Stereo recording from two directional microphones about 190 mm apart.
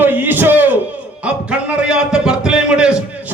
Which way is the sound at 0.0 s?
10° right (ahead or behind).